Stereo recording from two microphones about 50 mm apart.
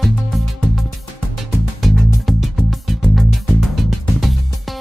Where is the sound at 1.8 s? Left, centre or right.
Centre.